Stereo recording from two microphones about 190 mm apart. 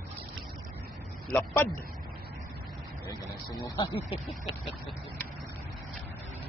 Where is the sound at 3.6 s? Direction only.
25° left (ahead or behind).